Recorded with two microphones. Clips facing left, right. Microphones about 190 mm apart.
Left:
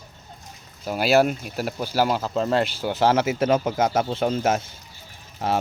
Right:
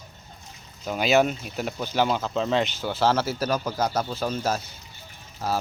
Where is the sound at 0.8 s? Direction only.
5° left (ahead or behind).